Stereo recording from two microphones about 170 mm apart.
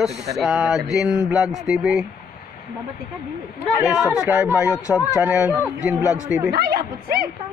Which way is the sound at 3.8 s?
5° right (ahead or behind).